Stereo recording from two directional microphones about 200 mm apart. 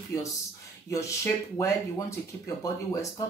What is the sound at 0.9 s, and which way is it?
Speech, 15° left (ahead or behind).